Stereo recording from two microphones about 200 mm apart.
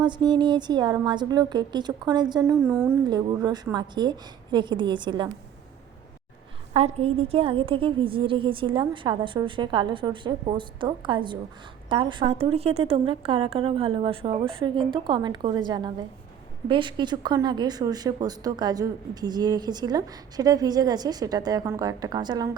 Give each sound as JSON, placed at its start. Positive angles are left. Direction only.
{"t": 0.0, "sound": "a woman's voice", "side_deg": -20}
{"t": 6.7, "sound": "a woman's voice", "side_deg": -30}